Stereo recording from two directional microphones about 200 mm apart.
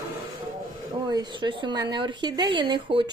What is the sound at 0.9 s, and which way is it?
Speech, 20° right (ahead or behind).